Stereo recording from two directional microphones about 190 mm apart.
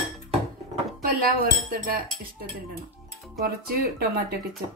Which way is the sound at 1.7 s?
50° right (ahead or behind).